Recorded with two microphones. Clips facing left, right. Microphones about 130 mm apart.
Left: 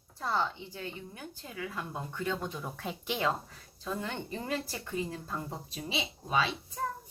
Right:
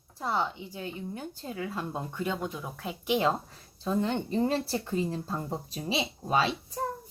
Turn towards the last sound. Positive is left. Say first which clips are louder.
# right 4 dB
turn(degrees=-40)  # may be behind; listen again after turning